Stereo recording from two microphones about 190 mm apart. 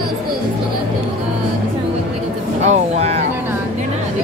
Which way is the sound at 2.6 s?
35° right (ahead or behind).